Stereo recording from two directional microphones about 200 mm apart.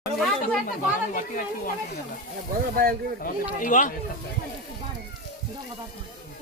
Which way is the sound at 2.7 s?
45° right (ahead or behind).